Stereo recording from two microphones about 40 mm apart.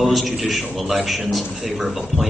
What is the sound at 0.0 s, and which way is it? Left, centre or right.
A man's voice, centre.